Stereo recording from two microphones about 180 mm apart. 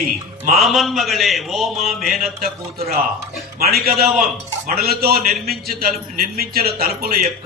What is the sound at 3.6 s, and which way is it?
A man's voice, 60° right (ahead or behind).